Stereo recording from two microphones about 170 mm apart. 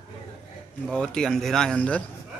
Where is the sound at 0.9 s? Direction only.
5° left (ahead or behind).